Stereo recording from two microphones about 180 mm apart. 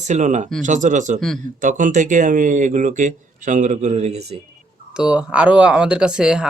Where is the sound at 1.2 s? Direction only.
Centre (ahead or behind).